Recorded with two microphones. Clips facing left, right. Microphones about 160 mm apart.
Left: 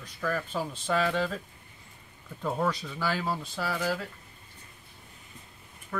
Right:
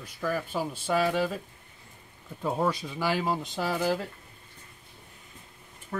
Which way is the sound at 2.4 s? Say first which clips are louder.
Right 2 dB; 15° right (ahead or behind).